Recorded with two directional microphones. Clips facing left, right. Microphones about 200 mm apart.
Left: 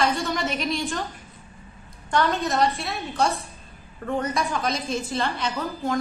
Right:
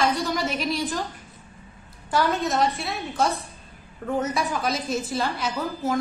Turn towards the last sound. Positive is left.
turn(degrees=-5)  # may be behind; listen again after turning